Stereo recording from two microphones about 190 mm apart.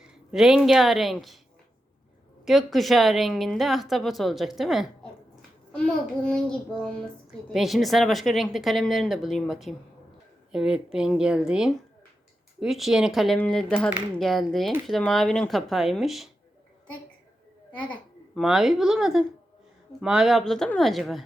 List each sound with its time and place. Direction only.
0.0 s speech: 5° right (ahead or behind)
2.4 s a woman's voice: centre (ahead or behind)
17.7 s babbling: 5° left (ahead or behind)
18.4 s a woman's voice: centre (ahead or behind)